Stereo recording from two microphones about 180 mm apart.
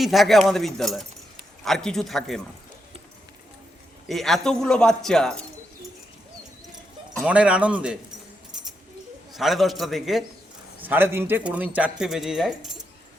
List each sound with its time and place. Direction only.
0.0 s speech: centre (ahead or behind)
4.1 s speech: centre (ahead or behind)
7.3 s a man's voice: 5° right (ahead or behind)
9.3 s a man's voice: centre (ahead or behind)